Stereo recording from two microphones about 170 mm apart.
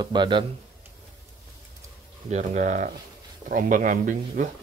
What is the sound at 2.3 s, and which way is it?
Speech, 45° right (ahead or behind).